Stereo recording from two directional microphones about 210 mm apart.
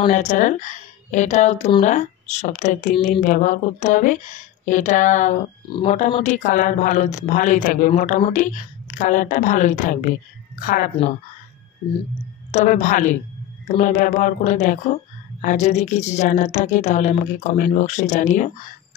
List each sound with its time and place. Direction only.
0.1 s a woman's voice: 35° left (ahead or behind)
5.7 s a woman's voice: 25° left (ahead or behind)
12.4 s a woman's voice: 35° left (ahead or behind)